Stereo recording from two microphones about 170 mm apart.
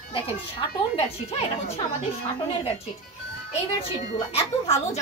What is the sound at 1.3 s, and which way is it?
Speech, 35° left (ahead or behind).